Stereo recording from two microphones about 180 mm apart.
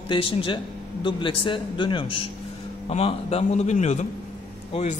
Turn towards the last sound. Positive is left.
turn(degrees=40)  # may be behind; listen again after turning